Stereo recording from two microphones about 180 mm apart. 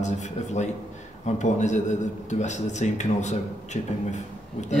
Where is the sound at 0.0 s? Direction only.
40° left (ahead or behind).